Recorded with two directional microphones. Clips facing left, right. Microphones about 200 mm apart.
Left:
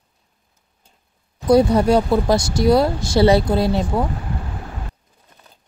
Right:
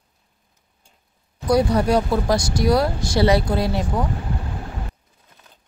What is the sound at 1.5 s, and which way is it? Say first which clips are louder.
Speech: left 4 dB; 25° left (ahead or behind).